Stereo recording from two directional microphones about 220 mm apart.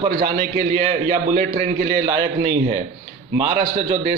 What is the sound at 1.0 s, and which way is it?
A man's voice, 25° right (ahead or behind).